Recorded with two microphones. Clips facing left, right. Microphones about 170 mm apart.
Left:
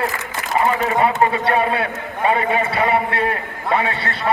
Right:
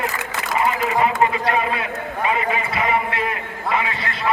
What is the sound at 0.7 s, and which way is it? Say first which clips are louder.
A man's voice: left 2 dB; 35° left (ahead or behind).